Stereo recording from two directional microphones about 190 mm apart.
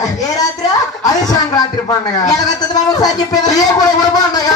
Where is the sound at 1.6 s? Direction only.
20° left (ahead or behind).